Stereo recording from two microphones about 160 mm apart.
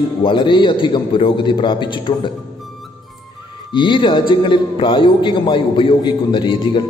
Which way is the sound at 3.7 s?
30° left (ahead or behind).